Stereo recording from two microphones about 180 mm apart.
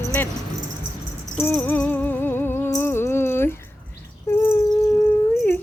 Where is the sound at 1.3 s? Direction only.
10° left (ahead or behind).